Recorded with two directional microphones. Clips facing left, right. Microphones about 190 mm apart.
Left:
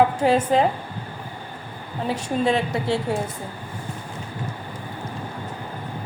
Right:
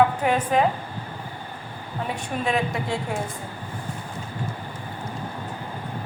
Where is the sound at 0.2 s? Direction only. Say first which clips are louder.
Left 4 dB; 30° left (ahead or behind).